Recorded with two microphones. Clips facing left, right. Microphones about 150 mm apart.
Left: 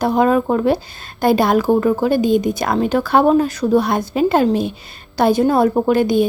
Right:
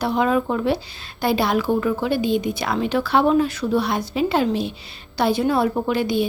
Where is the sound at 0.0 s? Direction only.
45° left (ahead or behind).